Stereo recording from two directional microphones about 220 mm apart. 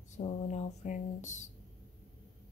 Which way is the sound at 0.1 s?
30° left (ahead or behind).